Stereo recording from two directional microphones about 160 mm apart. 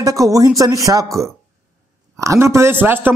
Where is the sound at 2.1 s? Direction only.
20° right (ahead or behind).